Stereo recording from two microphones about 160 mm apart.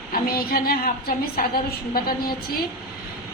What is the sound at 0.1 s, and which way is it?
A woman's voice, 70° left (ahead or behind).